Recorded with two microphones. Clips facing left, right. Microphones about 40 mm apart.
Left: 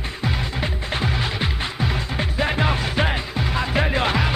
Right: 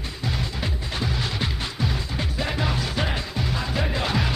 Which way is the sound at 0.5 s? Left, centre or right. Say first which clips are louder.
Left 4 dB; left.